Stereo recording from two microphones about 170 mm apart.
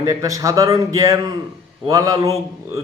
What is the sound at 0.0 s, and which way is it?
A man's voice, 20° right (ahead or behind).